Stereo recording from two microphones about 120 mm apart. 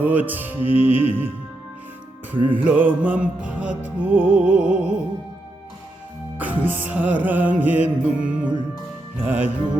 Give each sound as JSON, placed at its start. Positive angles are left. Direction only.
{"t": 0.0, "sound": "music", "side_deg": -15}
{"t": 0.6, "sound": "music", "side_deg": 55}
{"t": 2.3, "sound": "music", "side_deg": -15}
{"t": 6.3, "sound": "music", "side_deg": -15}